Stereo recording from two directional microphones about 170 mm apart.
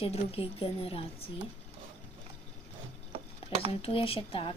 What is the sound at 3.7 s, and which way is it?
Speech, 35° left (ahead or behind).